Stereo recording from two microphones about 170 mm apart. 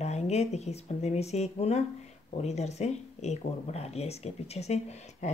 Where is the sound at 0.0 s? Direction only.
40° left (ahead or behind).